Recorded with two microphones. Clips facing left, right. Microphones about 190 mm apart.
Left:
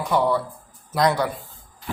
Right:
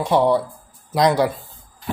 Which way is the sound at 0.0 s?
25° right (ahead or behind).